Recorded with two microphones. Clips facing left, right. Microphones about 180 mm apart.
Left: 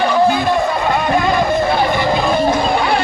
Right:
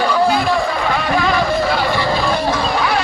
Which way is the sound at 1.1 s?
20° left (ahead or behind).